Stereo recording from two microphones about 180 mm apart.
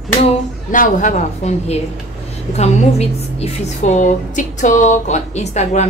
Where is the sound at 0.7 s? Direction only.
45° left (ahead or behind).